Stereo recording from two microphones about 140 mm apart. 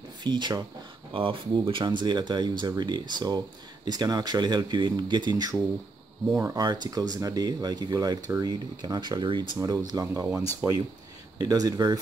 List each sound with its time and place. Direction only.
0.2 s speech: 30° right (ahead or behind)
6.2 s speech: 20° right (ahead or behind)
6.6 s speech: 30° right (ahead or behind)
10.6 s speech: 15° right (ahead or behind)
11.3 s speech: 25° right (ahead or behind)